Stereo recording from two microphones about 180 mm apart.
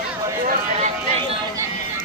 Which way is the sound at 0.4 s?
50° right (ahead or behind).